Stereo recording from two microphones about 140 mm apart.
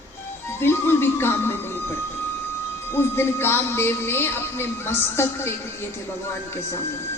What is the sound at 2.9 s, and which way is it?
Speech, 15° left (ahead or behind).